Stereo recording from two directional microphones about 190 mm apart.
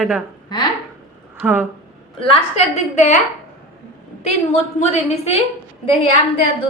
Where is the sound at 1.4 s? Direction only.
10° right (ahead or behind).